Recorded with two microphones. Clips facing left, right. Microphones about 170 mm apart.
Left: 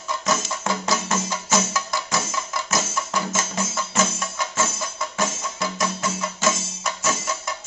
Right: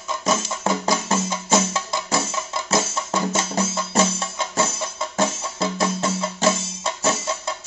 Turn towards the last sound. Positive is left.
turn(degrees=-30)  # may be behind; listen again after turning